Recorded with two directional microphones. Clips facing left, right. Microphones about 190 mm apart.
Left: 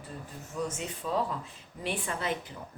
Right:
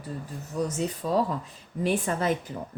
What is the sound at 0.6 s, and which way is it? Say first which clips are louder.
A woman's voice: right 6 dB; 40° right (ahead or behind).